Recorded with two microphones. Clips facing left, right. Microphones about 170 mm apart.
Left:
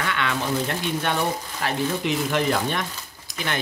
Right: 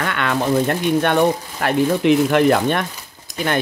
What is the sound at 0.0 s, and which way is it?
Speech, 55° right (ahead or behind).